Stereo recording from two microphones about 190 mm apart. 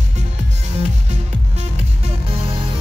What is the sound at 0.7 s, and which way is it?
Music, 35° right (ahead or behind).